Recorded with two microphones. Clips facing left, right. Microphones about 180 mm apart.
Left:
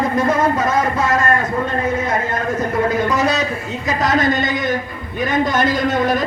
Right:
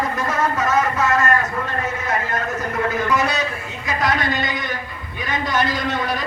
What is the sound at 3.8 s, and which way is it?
A man's voice, 45° left (ahead or behind).